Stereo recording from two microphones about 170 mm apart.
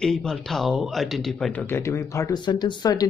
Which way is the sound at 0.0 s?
5° left (ahead or behind).